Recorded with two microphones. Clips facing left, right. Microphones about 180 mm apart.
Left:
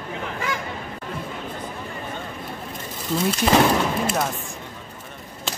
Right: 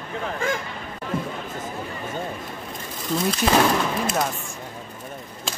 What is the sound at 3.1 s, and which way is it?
Speech, centre (ahead or behind).